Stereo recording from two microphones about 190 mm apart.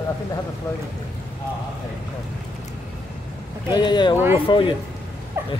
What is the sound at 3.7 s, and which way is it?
Speech, 25° left (ahead or behind).